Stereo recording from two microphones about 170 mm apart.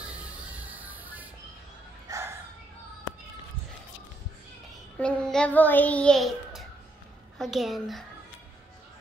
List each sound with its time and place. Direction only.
0.5 s music: 10° right (ahead or behind)
2.0 s a sound: 15° right (ahead or behind)
4.9 s a child's voice: 5° left (ahead or behind)